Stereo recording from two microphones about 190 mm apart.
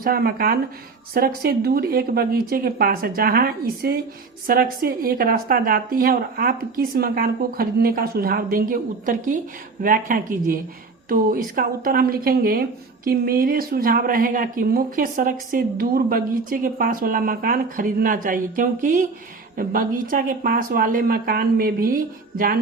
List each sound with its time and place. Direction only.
0.0 s a woman's voice: 50° right (ahead or behind)